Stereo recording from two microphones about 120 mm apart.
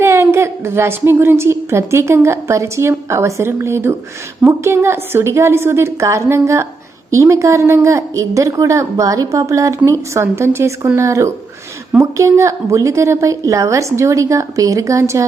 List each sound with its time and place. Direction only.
0.0 s a woman's voice: 20° right (ahead or behind)